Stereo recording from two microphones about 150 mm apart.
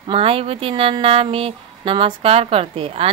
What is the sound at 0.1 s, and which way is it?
Speech, 40° right (ahead or behind).